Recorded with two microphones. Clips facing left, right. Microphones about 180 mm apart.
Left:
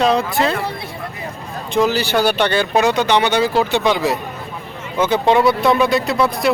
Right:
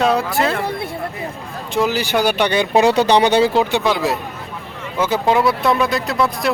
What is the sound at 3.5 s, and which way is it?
Speech, 15° right (ahead or behind).